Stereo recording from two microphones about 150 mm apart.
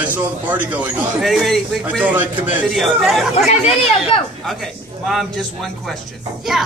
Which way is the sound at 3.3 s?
45° left (ahead or behind).